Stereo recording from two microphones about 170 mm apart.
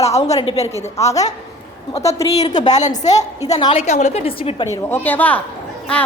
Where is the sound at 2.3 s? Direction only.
40° left (ahead or behind).